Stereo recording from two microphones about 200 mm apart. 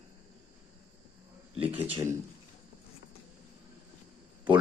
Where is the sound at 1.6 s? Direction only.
10° right (ahead or behind).